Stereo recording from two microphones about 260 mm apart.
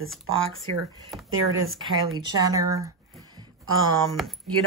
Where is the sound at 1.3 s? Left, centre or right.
Right.